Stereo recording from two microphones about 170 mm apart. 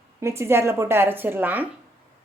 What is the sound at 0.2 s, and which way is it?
A woman's voice, 15° right (ahead or behind).